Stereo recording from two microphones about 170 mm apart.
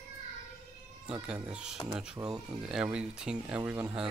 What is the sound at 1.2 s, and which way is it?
Speech, 5° right (ahead or behind).